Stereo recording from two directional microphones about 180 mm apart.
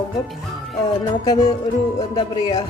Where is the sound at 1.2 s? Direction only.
20° left (ahead or behind).